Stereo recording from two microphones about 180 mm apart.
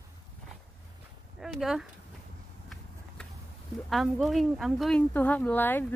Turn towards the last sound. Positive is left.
turn(degrees=10)  # may be behind; listen again after turning